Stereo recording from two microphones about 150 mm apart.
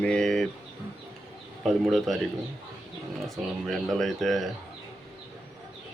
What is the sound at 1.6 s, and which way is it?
Speech, centre (ahead or behind).